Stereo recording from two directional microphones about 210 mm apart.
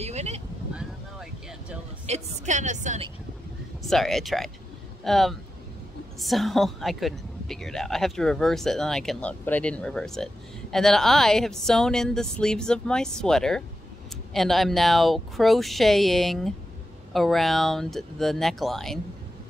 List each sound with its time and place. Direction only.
0.0 s a sound: 30° right (ahead or behind)
2.0 s a woman's voice: 35° right (ahead or behind)
3.8 s a woman's voice: centre (ahead or behind)